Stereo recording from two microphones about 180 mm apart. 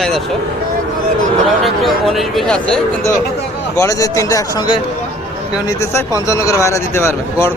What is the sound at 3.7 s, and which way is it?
Speech, 15° left (ahead or behind).